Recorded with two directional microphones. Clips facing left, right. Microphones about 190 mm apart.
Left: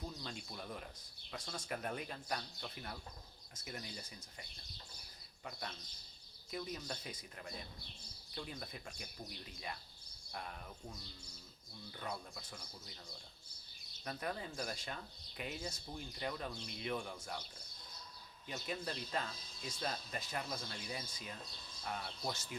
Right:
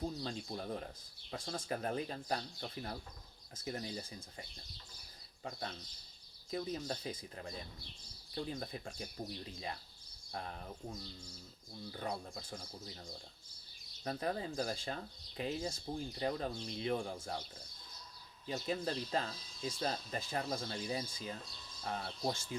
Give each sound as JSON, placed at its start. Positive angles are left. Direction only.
{"t": 0.0, "sound": "speech", "side_deg": -35}
{"t": 14.0, "sound": "speech", "side_deg": -30}
{"t": 18.4, "sound": "speech", "side_deg": -30}